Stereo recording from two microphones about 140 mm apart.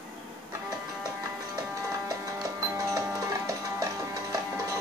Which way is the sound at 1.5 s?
25° right (ahead or behind).